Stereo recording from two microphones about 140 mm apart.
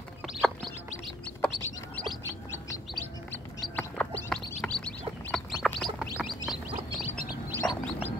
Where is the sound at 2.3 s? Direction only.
25° left (ahead or behind).